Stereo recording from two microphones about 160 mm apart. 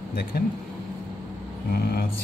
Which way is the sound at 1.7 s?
70° left (ahead or behind).